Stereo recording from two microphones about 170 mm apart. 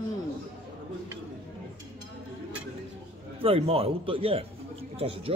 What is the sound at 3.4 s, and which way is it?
Speech, 35° right (ahead or behind).